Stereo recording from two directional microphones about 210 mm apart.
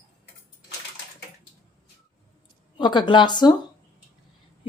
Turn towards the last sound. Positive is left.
turn(degrees=20)  # may be behind; listen again after turning